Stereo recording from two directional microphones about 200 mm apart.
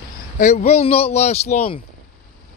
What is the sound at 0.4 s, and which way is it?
Speech, 35° left (ahead or behind).